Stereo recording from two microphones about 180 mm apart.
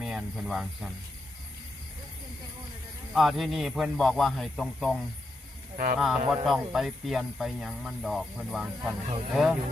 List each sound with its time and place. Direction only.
0.0 s speech: centre (ahead or behind)
3.2 s speech: centre (ahead or behind)
5.7 s speech: 45° right (ahead or behind)
6.0 s speech: centre (ahead or behind)